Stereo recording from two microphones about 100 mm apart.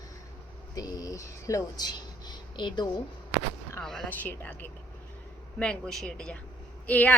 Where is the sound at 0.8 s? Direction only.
35° left (ahead or behind).